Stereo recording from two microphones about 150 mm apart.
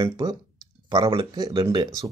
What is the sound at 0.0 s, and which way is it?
A man's voice, 25° right (ahead or behind).